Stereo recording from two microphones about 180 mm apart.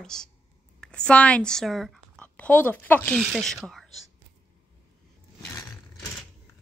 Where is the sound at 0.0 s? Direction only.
5° left (ahead or behind).